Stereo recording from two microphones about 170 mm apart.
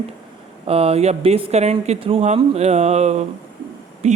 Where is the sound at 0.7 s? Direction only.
35° right (ahead or behind).